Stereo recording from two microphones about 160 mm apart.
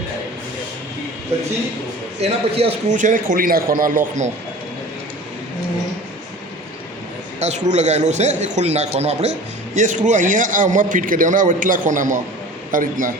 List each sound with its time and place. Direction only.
2.2 s speech: 40° right (ahead or behind)
3.0 s a man's voice: 55° right (ahead or behind)
7.3 s a man's voice: 45° right (ahead or behind)